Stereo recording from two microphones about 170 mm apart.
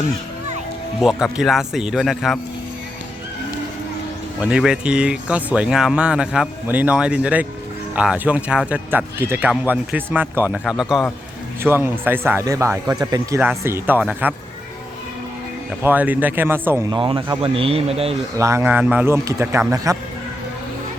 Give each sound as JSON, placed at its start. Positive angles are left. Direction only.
{"t": 1.0, "sound": "speech", "side_deg": 0}
{"t": 4.4, "sound": "speech", "side_deg": -5}
{"t": 15.8, "sound": "speech", "side_deg": -10}
{"t": 16.9, "sound": "speech", "side_deg": -30}
{"t": 18.3, "sound": "speech", "side_deg": -15}